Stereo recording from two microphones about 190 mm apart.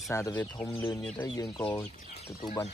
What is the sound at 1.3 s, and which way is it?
Speech, 25° left (ahead or behind).